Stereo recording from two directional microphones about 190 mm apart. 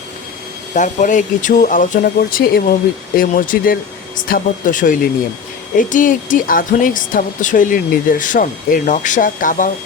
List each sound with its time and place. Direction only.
0.7 s speech: 40° left (ahead or behind)